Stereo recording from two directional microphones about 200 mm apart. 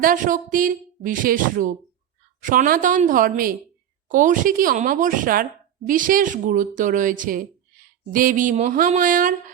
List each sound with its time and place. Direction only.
0.0 s a woman's voice: 45° right (ahead or behind)